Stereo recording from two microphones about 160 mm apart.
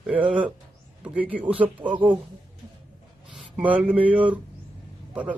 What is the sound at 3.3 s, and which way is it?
A man's voice, 10° right (ahead or behind).